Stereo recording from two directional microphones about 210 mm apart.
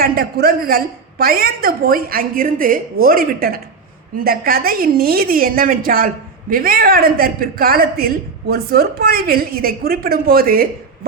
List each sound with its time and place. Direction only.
0.0 s speech: 45° right (ahead or behind)